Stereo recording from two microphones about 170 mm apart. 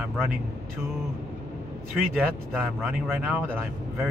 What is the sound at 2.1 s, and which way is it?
Speech, 10° right (ahead or behind).